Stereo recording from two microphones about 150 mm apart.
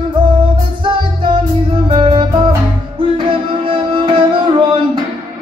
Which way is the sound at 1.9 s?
35° right (ahead or behind).